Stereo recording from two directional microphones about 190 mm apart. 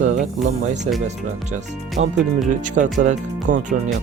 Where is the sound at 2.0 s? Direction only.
80° right.